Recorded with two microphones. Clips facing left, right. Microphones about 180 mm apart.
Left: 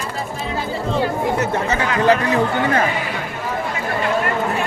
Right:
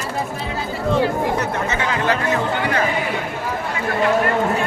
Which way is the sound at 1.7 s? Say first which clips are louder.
Left 3 dB; 35° left (ahead or behind).